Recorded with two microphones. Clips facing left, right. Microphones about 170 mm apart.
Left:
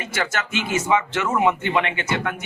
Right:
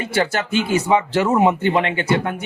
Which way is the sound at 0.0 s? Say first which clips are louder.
Right 6 dB; 30° right (ahead or behind).